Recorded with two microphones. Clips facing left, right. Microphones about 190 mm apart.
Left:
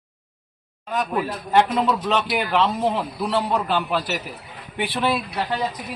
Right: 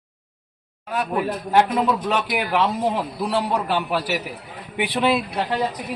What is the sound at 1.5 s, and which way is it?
Speech, 10° right (ahead or behind).